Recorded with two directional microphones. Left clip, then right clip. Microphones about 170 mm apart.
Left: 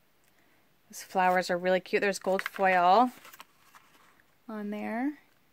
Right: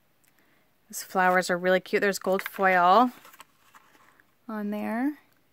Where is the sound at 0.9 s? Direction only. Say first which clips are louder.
Right 3 dB; 30° right (ahead or behind).